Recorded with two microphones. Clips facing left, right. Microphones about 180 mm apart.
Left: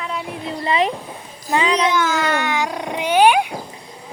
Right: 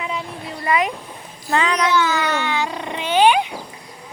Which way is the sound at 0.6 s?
30° left (ahead or behind).